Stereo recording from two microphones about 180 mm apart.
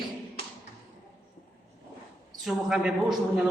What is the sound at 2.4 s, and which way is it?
Speech, 5° right (ahead or behind).